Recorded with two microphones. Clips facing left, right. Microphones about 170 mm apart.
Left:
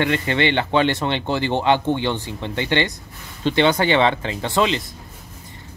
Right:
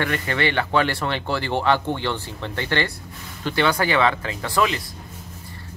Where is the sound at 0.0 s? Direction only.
25° left (ahead or behind).